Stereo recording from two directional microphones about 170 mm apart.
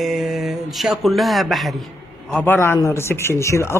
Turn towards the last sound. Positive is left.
turn(degrees=15)  # may be behind; listen again after turning